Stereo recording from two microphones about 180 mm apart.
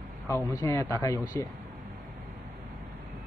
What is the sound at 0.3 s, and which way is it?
Speech, 15° left (ahead or behind).